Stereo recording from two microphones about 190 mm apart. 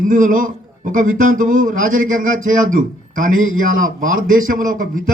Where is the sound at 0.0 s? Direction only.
45° right (ahead or behind).